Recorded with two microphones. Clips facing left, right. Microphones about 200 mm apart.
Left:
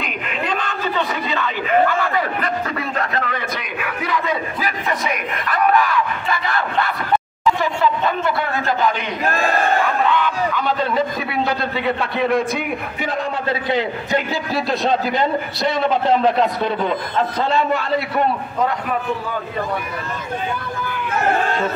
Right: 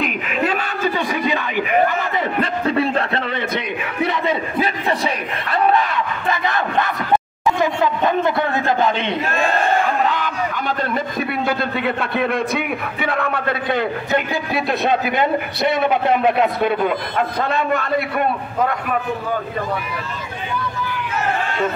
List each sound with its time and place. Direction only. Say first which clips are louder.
0.0 s a sound: right 5 dB; 5° right (ahead or behind); by 9.1 s 20° right (ahead or behind)
10.0 s a man's voice: left 2 dB; 40° right (ahead or behind); by 15.8 s 60° right (ahead or behind)
17.5 s a man's voice: left 1 dB; 55° right (ahead or behind)